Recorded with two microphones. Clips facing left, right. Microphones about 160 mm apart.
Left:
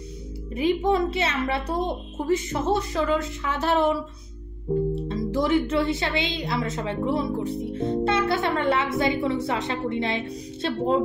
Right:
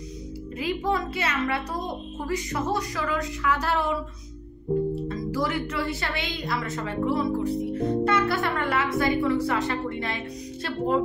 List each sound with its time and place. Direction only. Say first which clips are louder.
0.6 s speech: left 5 dB; 20° left (ahead or behind)
4.9 s speech: left 2 dB; 25° left (ahead or behind)